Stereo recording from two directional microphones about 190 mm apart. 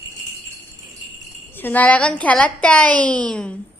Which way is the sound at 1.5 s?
10° left (ahead or behind).